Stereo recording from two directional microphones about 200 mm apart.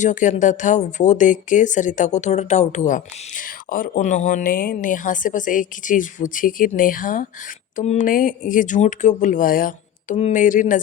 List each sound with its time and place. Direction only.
0.0 s speech: 40° left (ahead or behind)